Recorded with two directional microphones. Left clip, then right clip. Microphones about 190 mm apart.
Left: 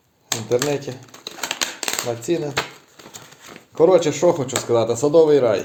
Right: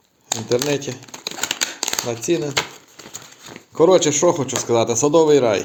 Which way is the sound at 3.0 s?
25° right (ahead or behind).